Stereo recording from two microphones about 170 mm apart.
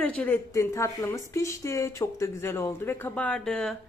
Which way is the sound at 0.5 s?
15° left (ahead or behind).